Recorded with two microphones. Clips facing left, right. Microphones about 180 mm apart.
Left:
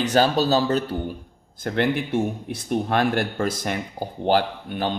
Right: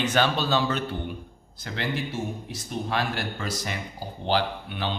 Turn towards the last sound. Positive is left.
turn(degrees=45)  # may be behind; listen again after turning